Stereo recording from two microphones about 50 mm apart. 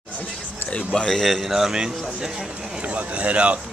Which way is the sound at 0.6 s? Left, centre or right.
Left.